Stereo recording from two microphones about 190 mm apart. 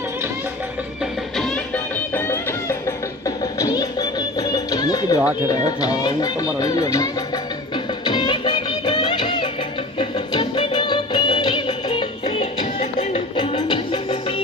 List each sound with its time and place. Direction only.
1.4 s music: 5° left (ahead or behind)
5.5 s speech: 20° left (ahead or behind)
8.0 s music: 25° left (ahead or behind)
12.2 s music: 35° left (ahead or behind)
13.3 s music: 25° left (ahead or behind)